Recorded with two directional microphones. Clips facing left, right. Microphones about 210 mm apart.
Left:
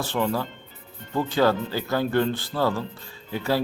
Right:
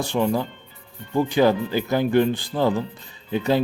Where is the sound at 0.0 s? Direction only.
15° right (ahead or behind).